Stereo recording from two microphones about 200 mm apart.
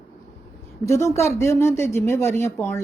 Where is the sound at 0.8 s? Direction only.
15° left (ahead or behind).